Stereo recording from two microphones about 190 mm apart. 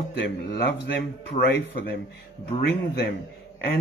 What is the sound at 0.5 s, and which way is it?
Speech, 60° left (ahead or behind).